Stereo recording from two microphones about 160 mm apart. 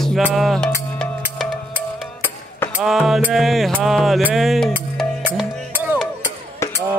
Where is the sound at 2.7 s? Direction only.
5° right (ahead or behind).